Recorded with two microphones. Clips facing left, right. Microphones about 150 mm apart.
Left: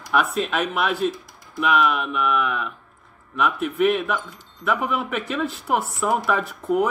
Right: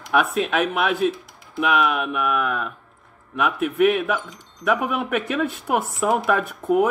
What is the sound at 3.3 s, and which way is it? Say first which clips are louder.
Speech: right 1 dB; 60° right (ahead or behind).